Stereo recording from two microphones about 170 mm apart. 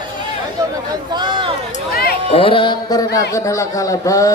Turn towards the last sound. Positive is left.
turn(degrees=20)  # may be behind; listen again after turning